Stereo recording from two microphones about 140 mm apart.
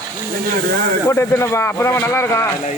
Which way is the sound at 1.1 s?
20° left (ahead or behind).